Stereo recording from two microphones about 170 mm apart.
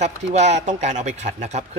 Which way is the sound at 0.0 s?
40° right (ahead or behind).